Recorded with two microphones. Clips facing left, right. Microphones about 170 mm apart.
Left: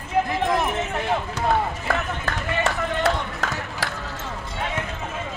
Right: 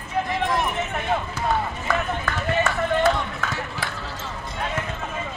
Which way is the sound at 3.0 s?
80° left.